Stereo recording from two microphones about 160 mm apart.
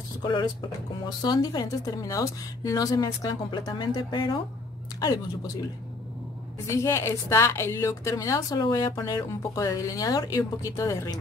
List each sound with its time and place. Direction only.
0.2 s a woman's voice: 30° left (ahead or behind)
6.7 s a woman's voice: 20° left (ahead or behind)